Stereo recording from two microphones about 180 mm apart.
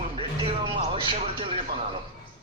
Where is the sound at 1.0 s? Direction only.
30° right (ahead or behind).